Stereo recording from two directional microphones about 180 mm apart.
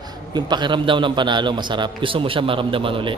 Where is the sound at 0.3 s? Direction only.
25° right (ahead or behind).